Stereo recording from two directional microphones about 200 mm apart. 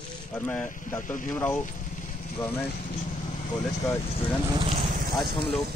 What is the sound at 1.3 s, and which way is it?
Speech, 10° left (ahead or behind).